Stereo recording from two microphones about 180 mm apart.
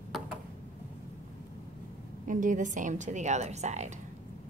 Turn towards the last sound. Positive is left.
turn(degrees=-40)  # may be behind; listen again after turning